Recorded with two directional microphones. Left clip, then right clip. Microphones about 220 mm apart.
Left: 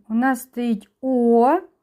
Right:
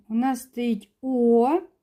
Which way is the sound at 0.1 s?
15° left (ahead or behind).